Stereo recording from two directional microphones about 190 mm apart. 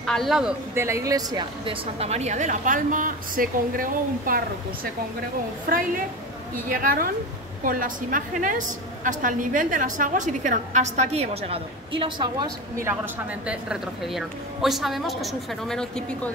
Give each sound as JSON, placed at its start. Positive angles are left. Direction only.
{"t": 0.0, "sound": "speech", "side_deg": 0}
{"t": 2.0, "sound": "a woman's voice", "side_deg": -35}
{"t": 5.7, "sound": "a woman's voice", "side_deg": -50}
{"t": 13.5, "sound": "a woman's voice", "side_deg": -5}